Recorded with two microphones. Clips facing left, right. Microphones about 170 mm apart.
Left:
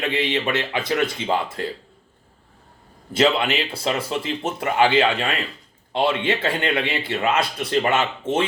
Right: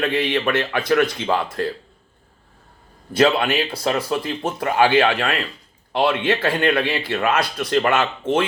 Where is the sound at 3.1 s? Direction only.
25° left (ahead or behind).